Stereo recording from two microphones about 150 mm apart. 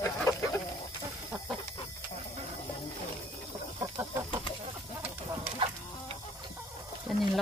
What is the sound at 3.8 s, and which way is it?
Chicken, 20° right (ahead or behind).